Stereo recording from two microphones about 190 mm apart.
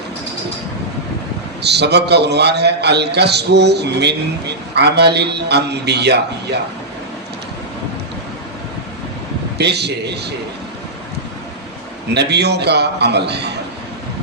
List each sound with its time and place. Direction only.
1.6 s a man's voice: 60° right (ahead or behind)
9.6 s a man's voice: 60° right (ahead or behind)
12.1 s a man's voice: 60° right (ahead or behind)